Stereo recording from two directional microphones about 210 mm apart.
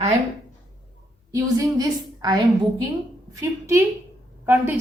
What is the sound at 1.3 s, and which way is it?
A woman's voice, 15° right (ahead or behind).